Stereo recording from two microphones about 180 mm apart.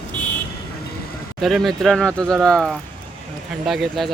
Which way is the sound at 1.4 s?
Centre (ahead or behind).